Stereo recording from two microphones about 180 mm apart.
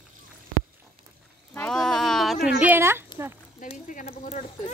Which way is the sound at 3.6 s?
45° left (ahead or behind).